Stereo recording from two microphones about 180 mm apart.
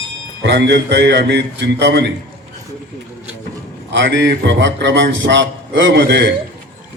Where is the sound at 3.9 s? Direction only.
85° right.